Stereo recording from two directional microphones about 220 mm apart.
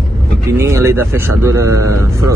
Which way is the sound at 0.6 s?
10° right (ahead or behind).